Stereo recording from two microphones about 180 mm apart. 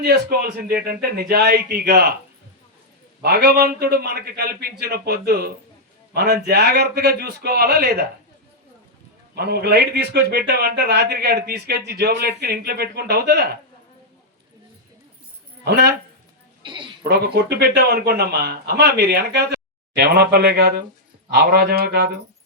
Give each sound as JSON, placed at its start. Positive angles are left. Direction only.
{"t": 0.0, "sound": "a man's voice", "side_deg": -60}
{"t": 3.2, "sound": "a man's voice", "side_deg": -60}
{"t": 9.3, "sound": "a man's voice", "side_deg": -60}
{"t": 15.6, "sound": "a man's voice", "side_deg": -65}
{"t": 16.6, "sound": "a sound", "side_deg": -25}
{"t": 17.0, "sound": "a man's voice", "side_deg": -60}